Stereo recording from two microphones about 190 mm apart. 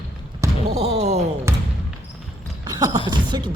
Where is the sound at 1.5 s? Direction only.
15° right (ahead or behind).